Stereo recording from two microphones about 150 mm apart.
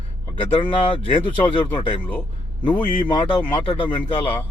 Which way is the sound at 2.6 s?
10° left (ahead or behind).